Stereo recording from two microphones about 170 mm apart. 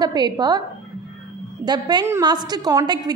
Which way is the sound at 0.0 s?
25° right (ahead or behind).